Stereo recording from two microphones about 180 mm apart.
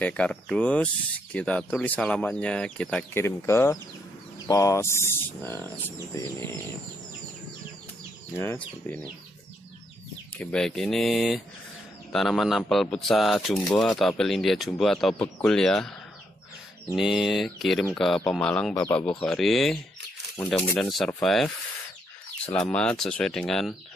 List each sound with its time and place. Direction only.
0.0 s speech: 5° left (ahead or behind)
8.3 s speech: 10° left (ahead or behind)
10.3 s speech: 5° left (ahead or behind)
16.9 s speech: centre (ahead or behind)
22.7 s speech: 5° left (ahead or behind)